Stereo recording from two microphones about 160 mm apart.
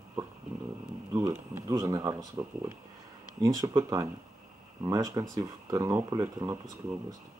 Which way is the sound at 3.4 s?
20° right (ahead or behind).